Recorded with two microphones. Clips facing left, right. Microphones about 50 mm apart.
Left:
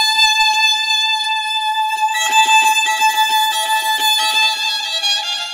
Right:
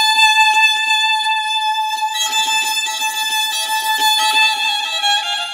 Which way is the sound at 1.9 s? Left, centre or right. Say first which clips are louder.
Left 4 dB; left.